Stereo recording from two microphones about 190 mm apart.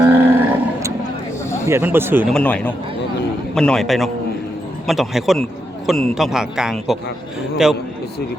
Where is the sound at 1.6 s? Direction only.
10° right (ahead or behind).